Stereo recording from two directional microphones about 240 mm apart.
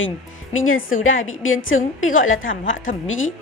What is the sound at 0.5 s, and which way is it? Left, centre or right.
Speech, left.